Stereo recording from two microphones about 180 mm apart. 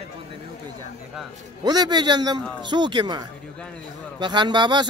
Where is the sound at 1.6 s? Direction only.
25° right (ahead or behind).